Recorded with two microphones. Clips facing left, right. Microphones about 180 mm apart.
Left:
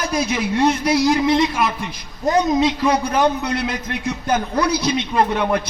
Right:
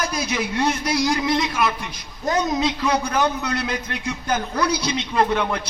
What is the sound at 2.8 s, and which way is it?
A man's voice, 25° left (ahead or behind).